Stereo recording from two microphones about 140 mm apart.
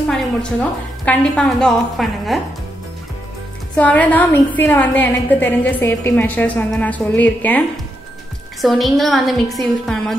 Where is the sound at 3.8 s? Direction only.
10° left (ahead or behind).